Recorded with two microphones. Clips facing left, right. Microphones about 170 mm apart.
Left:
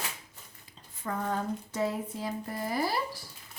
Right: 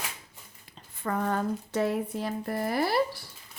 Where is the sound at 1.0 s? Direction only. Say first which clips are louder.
Right 4 dB; 65° right (ahead or behind).